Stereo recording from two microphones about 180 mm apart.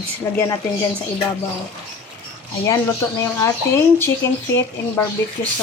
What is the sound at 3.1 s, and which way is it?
A woman's voice, 15° left (ahead or behind).